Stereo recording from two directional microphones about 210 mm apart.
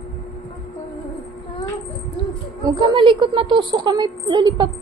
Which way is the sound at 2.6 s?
20° right (ahead or behind).